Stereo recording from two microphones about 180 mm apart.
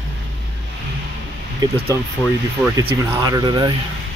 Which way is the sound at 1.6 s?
20° right (ahead or behind).